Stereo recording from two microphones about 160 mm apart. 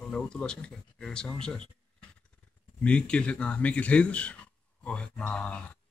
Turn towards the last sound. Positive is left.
turn(degrees=5)  # may be behind; listen again after turning